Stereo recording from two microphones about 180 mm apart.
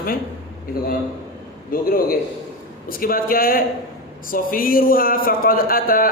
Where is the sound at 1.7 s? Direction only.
55° left (ahead or behind).